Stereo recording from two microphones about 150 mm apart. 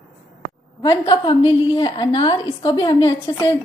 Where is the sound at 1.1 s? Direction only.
30° left (ahead or behind).